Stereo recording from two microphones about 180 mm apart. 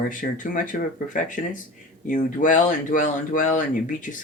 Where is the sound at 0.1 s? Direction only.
45° left (ahead or behind).